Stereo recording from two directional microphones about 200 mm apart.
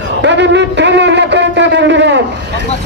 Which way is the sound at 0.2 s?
60° right (ahead or behind).